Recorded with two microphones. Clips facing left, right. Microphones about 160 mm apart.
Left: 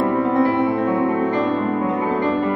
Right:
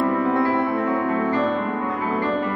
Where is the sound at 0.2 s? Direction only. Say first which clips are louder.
Left 3 dB; 20° left (ahead or behind).